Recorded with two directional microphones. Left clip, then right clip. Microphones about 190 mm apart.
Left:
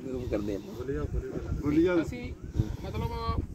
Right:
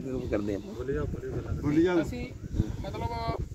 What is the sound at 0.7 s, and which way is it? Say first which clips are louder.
Speech: right 2 dB; 15° left (ahead or behind).